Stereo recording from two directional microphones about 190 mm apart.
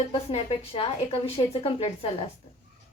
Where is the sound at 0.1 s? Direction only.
35° left (ahead or behind).